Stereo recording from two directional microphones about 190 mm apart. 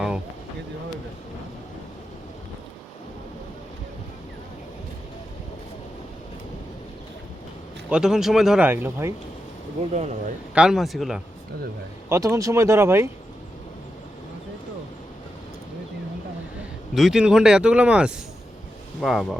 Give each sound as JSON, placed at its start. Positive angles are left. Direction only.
{"t": 7.9, "sound": "a man's voice", "side_deg": -5}
{"t": 9.9, "sound": "speech", "side_deg": -35}
{"t": 10.5, "sound": "a man's voice", "side_deg": -5}
{"t": 12.0, "sound": "speech", "side_deg": -15}
{"t": 16.9, "sound": "a man's voice", "side_deg": 0}